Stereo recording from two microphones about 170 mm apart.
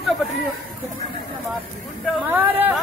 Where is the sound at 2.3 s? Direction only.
10° right (ahead or behind).